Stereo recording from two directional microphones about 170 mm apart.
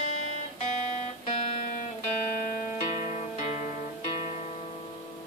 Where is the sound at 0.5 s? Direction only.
45° left (ahead or behind).